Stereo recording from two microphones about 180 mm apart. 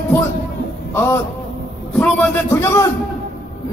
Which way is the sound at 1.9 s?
5° left (ahead or behind).